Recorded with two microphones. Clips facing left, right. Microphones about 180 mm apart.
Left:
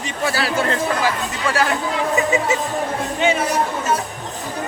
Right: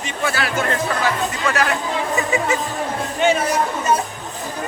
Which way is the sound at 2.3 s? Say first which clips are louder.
Left 1 dB; 20° left (ahead or behind).